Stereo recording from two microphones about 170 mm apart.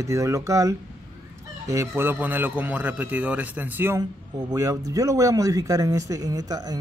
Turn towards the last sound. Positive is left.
turn(degrees=-20)  # may be behind; listen again after turning